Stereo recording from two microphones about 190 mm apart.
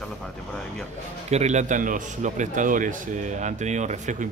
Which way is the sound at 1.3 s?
35° right (ahead or behind).